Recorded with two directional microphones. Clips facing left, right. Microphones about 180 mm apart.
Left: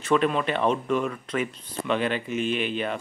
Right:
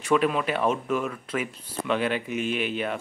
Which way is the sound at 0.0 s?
5° right (ahead or behind).